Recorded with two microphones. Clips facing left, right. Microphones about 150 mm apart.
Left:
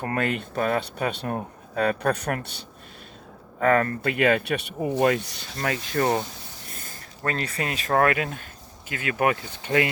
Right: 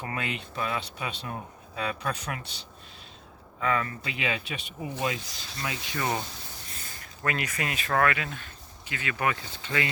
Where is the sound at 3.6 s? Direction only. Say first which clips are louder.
Left 8 dB; 50° left (ahead or behind).